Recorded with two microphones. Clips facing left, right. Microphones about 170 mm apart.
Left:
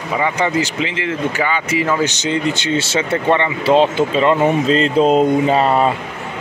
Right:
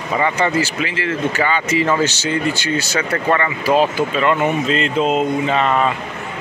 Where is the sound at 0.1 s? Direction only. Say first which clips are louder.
Even; 10° left (ahead or behind); by 5.9 s 35° left (ahead or behind).